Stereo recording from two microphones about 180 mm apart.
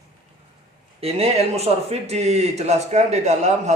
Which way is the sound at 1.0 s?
35° right (ahead or behind).